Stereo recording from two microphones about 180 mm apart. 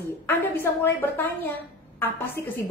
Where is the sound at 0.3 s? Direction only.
15° left (ahead or behind).